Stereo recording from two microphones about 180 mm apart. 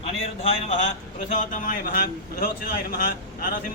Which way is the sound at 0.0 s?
35° left (ahead or behind).